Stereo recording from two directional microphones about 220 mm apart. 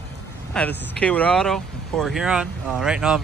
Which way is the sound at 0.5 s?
5° left (ahead or behind).